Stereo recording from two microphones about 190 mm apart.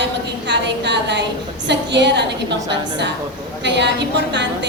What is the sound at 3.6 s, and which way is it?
A woman's voice, 65° right (ahead or behind).